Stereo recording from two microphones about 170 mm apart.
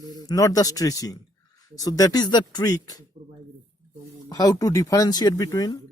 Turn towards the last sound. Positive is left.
turn(degrees=20)  # may be behind; listen again after turning